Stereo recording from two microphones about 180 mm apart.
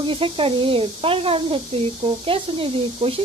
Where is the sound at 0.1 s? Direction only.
30° right (ahead or behind).